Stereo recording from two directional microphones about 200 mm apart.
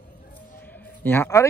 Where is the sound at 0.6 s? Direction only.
10° left (ahead or behind).